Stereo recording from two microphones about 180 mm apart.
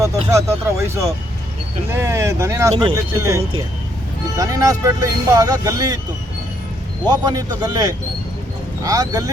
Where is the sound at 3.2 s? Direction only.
15° right (ahead or behind).